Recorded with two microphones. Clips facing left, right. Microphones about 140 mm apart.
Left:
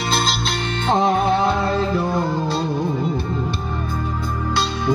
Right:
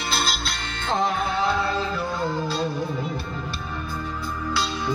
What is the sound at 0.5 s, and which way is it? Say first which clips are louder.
Music: left 7 dB; 55° left (ahead or behind).